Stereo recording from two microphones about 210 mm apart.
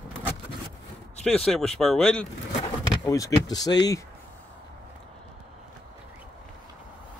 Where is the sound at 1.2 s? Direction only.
5° left (ahead or behind).